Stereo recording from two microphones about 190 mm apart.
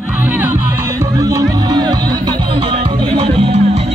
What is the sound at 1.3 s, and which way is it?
Music, 20° right (ahead or behind).